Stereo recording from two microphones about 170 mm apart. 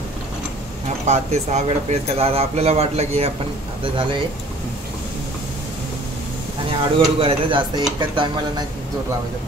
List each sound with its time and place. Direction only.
0.8 s speech: 40° right (ahead or behind)
6.7 s speech: 30° right (ahead or behind)